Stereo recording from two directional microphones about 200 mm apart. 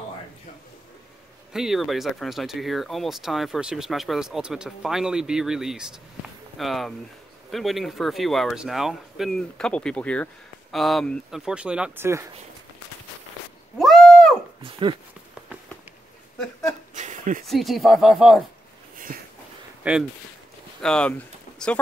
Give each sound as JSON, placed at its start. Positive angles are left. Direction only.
{"t": 1.5, "sound": "speech", "side_deg": 0}
{"t": 13.7, "sound": "a sound", "side_deg": 0}
{"t": 14.6, "sound": "speech", "side_deg": -25}
{"t": 16.9, "sound": "a sound", "side_deg": -40}
{"t": 17.5, "sound": "speech", "side_deg": 0}
{"t": 19.8, "sound": "speech", "side_deg": -5}
{"t": 20.8, "sound": "speech", "side_deg": 5}